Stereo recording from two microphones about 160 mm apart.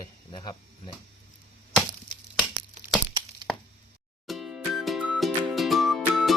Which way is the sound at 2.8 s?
50° right (ahead or behind).